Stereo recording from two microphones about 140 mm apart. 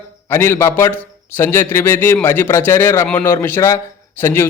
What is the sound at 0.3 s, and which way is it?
A man's voice, 15° left (ahead or behind).